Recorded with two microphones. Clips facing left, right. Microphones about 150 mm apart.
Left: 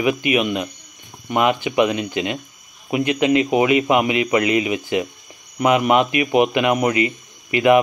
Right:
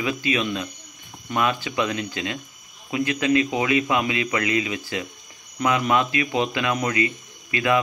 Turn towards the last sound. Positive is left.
turn(degrees=20)  # may be behind; listen again after turning